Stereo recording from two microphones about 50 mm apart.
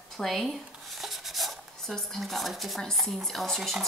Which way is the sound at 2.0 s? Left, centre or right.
Centre.